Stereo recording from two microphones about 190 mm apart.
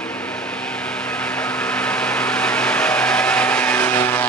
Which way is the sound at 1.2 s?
5° left (ahead or behind).